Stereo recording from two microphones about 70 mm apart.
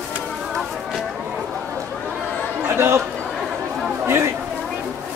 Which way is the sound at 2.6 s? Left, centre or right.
Right.